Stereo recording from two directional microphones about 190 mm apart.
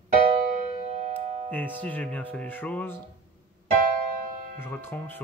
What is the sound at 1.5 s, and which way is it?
Speech, 10° left (ahead or behind).